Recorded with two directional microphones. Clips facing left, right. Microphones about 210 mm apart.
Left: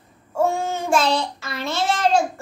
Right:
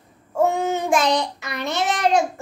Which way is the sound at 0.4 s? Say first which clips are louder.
Right 2 dB; 20° right (ahead or behind).